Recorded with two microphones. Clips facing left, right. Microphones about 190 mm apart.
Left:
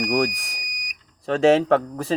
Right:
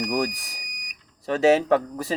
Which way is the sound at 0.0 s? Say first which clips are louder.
Left 3 dB; 20° left (ahead or behind).